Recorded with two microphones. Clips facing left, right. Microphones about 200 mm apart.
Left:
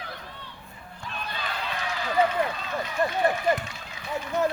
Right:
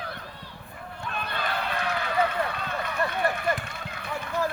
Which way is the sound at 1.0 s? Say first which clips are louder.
Right 3 dB; 60° right (ahead or behind).